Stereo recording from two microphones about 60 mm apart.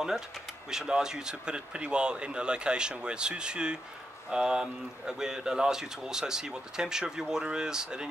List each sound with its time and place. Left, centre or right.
0.7 s speech: centre